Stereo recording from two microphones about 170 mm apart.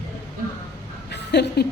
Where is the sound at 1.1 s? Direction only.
85° left.